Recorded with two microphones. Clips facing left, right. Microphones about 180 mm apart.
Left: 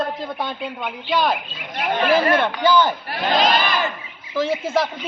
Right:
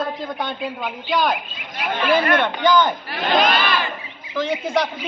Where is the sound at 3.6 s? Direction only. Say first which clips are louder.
Even; 45° left (ahead or behind).